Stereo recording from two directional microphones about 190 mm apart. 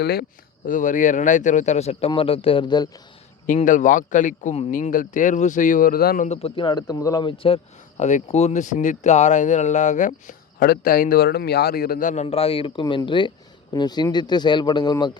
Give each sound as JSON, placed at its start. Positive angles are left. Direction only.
{"t": 0.0, "sound": "a man's voice", "side_deg": 55}
{"t": 3.4, "sound": "speech", "side_deg": 45}
{"t": 6.2, "sound": "a man's voice", "side_deg": 35}